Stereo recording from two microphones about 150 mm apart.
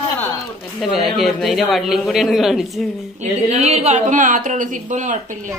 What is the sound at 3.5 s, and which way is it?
A woman's voice, 45° right (ahead or behind).